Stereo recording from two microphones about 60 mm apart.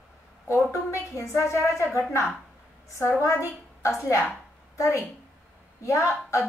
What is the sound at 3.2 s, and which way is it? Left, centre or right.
A woman's voice, left.